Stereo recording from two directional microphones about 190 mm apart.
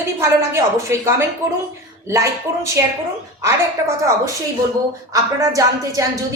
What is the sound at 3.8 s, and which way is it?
Speech, 15° right (ahead or behind).